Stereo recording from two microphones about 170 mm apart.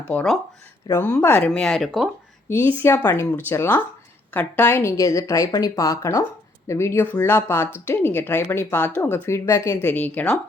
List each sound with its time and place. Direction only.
0.1 s speech: 10° left (ahead or behind)
2.5 s speech: 15° left (ahead or behind)